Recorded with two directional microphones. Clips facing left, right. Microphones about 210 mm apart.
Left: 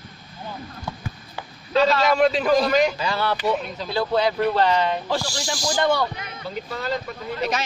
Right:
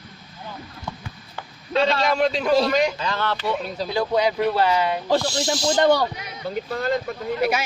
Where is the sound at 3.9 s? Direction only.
15° right (ahead or behind).